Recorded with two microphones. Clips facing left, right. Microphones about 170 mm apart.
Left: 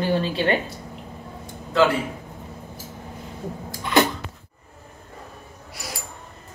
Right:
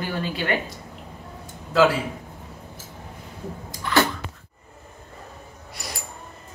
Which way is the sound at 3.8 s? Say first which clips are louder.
Left 2 dB; 20° left (ahead or behind).